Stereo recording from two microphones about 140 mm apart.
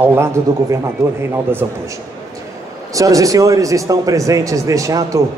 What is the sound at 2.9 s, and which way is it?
Speech, 25° right (ahead or behind).